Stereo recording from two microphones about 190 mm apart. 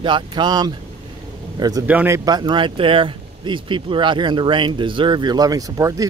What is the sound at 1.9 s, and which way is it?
Speech, 10° right (ahead or behind).